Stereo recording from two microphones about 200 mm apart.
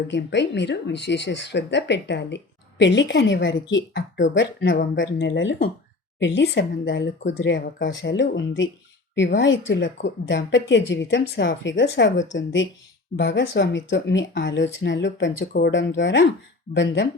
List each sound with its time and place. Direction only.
0.1 s speech: 60° left (ahead or behind)